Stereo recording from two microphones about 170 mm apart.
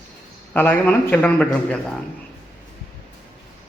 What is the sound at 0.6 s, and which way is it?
A man's voice, 10° left (ahead or behind).